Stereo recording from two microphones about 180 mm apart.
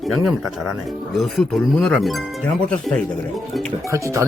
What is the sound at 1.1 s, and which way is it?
Speech, centre (ahead or behind).